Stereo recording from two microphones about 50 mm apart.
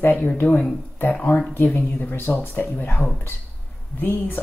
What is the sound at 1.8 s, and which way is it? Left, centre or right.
Speech, left.